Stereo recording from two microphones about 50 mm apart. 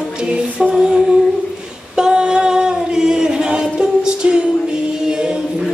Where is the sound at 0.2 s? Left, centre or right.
Centre.